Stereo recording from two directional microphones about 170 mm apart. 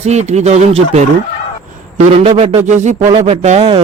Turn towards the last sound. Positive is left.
turn(degrees=-40)  # may be behind; listen again after turning